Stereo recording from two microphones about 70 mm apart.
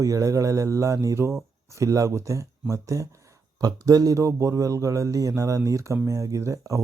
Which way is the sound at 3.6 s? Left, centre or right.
Right.